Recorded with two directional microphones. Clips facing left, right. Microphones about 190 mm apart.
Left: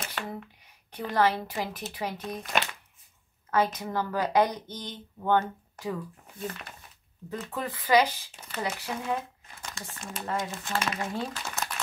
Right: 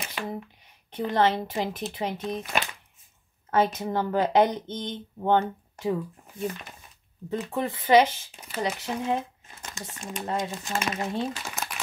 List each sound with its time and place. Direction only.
0.1 s a sound: 20° right (ahead or behind)
0.9 s speech: 25° right (ahead or behind)
3.4 s speech: 25° right (ahead or behind)
7.2 s speech: 25° right (ahead or behind)